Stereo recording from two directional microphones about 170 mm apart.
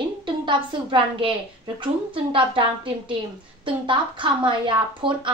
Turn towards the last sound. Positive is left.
turn(degrees=-30)  # may be behind; listen again after turning